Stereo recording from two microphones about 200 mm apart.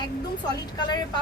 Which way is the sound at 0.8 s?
20° left (ahead or behind).